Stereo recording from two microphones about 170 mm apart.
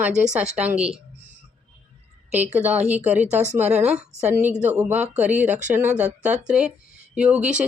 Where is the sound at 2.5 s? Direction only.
10° right (ahead or behind).